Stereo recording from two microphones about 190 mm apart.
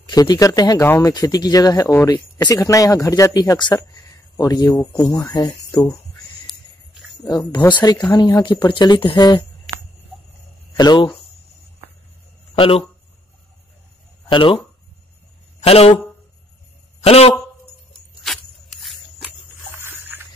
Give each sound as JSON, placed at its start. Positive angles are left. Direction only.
{"t": 0.0, "sound": "speech", "side_deg": 20}
{"t": 7.2, "sound": "speech", "side_deg": 20}
{"t": 9.7, "sound": "a sound", "side_deg": 0}
{"t": 10.8, "sound": "speech", "side_deg": 20}
{"t": 12.5, "sound": "speech", "side_deg": 30}
{"t": 14.3, "sound": "speech", "side_deg": 30}
{"t": 15.6, "sound": "speech", "side_deg": 30}
{"t": 17.0, "sound": "a man's voice", "side_deg": 30}
{"t": 18.2, "sound": "a sound", "side_deg": 0}
{"t": 19.7, "sound": "a sound", "side_deg": -10}